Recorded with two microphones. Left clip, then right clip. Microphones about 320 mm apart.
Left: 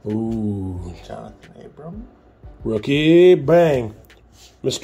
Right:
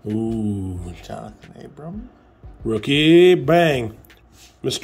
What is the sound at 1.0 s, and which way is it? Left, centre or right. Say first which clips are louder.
Speech: right 1 dB; right.